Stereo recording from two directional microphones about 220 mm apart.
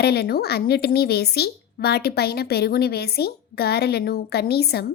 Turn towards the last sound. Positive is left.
turn(degrees=45)  # may be behind; listen again after turning